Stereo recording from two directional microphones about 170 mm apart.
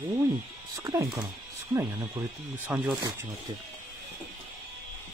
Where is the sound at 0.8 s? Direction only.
20° right (ahead or behind).